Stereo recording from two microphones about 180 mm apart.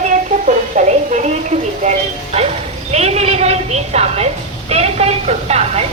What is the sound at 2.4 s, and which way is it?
Bow-wow, 35° right (ahead or behind).